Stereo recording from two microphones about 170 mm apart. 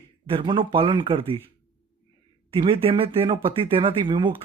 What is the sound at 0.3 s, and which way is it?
Speech, 30° right (ahead or behind).